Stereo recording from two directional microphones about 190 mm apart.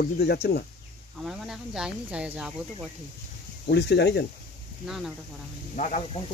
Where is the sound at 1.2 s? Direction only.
5° right (ahead or behind).